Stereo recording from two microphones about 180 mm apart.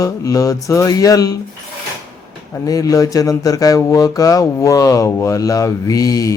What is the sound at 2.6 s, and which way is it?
Speech, 20° left (ahead or behind).